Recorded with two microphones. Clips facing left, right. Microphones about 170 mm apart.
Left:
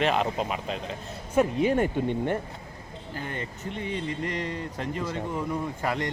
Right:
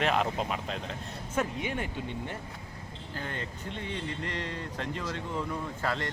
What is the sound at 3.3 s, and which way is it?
Speech, 10° left (ahead or behind).